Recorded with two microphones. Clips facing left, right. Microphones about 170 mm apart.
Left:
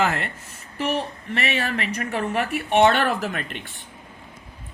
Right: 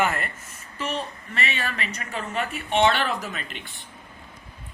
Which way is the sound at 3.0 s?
55° left (ahead or behind).